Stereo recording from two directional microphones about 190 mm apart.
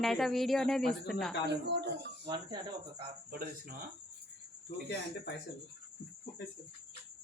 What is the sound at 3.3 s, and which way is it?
Speech, 50° right (ahead or behind).